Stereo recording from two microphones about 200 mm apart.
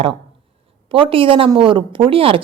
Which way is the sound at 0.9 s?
25° right (ahead or behind).